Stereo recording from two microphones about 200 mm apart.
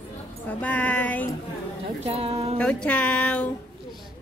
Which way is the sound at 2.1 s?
30° right (ahead or behind).